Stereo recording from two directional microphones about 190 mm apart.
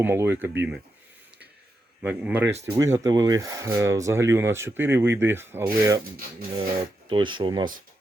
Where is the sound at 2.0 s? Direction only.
10° right (ahead or behind).